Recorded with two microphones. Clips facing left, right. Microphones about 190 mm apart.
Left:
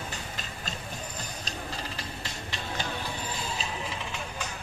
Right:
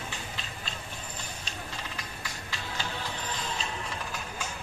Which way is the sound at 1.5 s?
30° left (ahead or behind).